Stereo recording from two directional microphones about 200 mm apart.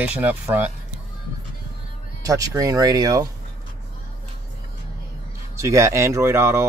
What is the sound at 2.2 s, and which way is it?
Speech, 15° right (ahead or behind).